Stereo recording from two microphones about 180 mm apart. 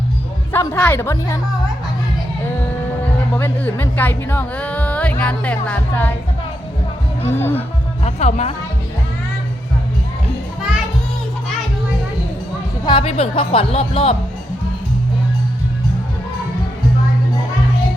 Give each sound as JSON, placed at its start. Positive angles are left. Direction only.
{"t": 0.5, "sound": "a woman's voice", "side_deg": 15}
{"t": 3.3, "sound": "speech", "side_deg": 10}
{"t": 7.3, "sound": "a woman's voice", "side_deg": 10}
{"t": 8.0, "sound": "speech", "side_deg": 35}
{"t": 12.8, "sound": "speech", "side_deg": 30}